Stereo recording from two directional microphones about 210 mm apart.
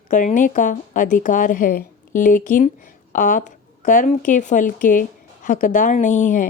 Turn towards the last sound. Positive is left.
turn(degrees=35)  # may be behind; listen again after turning